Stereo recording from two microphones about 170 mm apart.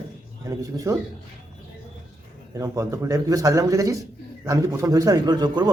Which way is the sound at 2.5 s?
20° right (ahead or behind).